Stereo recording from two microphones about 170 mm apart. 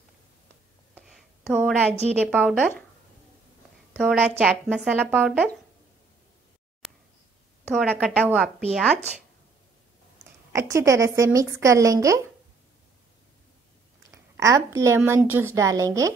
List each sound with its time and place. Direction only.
0.9 s a sound: centre (ahead or behind)
2.3 s speech: 5° right (ahead or behind)
4.0 s speech: 5° right (ahead or behind)
7.7 s a woman's voice: centre (ahead or behind)
10.5 s speech: 15° right (ahead or behind)
14.1 s a woman's voice: 15° right (ahead or behind)